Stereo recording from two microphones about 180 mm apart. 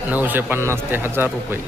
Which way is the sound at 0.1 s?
10° right (ahead or behind).